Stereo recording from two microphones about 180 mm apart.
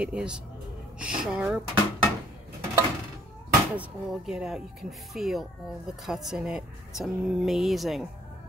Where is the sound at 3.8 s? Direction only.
5° right (ahead or behind).